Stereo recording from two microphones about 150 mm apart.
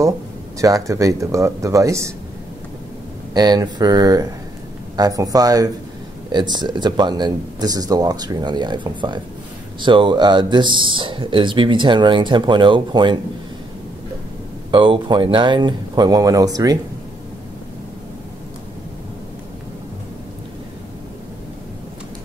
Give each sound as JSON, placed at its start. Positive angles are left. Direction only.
{"t": 0.6, "sound": "speech", "side_deg": -20}
{"t": 3.3, "sound": "speech", "side_deg": -30}
{"t": 14.7, "sound": "speech", "side_deg": -35}